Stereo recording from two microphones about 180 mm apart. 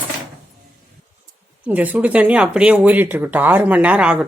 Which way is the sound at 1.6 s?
10° right (ahead or behind).